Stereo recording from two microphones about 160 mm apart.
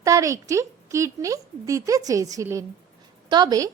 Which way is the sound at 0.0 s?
20° right (ahead or behind).